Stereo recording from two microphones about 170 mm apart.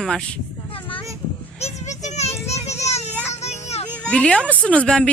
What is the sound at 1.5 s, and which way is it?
Child singing, 40° left (ahead or behind).